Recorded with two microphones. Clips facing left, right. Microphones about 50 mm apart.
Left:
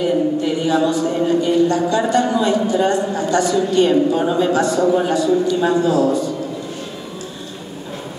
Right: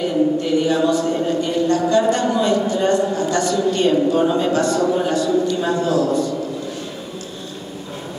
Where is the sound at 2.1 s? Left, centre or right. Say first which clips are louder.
Left 2 dB; centre.